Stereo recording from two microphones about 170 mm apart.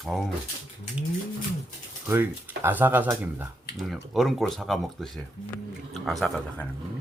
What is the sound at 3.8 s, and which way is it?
Speech, centre (ahead or behind).